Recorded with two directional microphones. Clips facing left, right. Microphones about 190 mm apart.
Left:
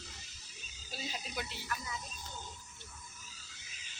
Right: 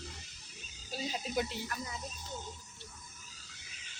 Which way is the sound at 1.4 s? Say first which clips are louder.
Right 5 dB; 40° right (ahead or behind).